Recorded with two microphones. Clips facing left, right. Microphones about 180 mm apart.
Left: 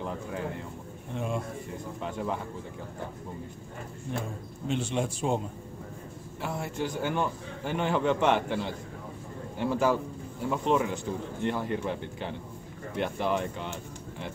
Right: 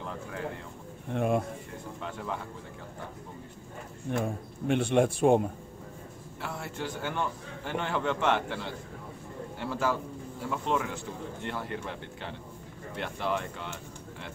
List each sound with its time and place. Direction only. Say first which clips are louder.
1.1 s speech: right 5 dB; 55° right (ahead or behind)
2.0 s speech: left 4 dB; 20° left (ahead or behind)
4.2 s speech: right 4 dB; 55° right (ahead or behind)
6.4 s a man's voice: left 4 dB; 15° left (ahead or behind)